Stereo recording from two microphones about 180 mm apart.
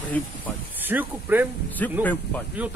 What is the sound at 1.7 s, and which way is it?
Speech, 10° left (ahead or behind).